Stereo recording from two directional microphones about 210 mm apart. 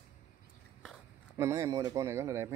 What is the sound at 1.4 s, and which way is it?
A man's voice, 15° right (ahead or behind).